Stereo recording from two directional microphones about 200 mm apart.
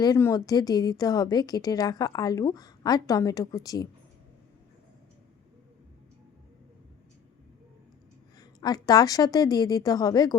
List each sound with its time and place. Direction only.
0.0 s a woman's voice: 15° left (ahead or behind)
8.4 s a woman's voice: 20° left (ahead or behind)